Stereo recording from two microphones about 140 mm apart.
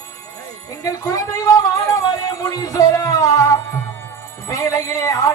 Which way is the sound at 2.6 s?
25° left (ahead or behind).